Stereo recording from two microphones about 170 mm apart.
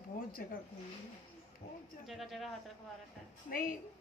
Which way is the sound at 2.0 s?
Centre (ahead or behind).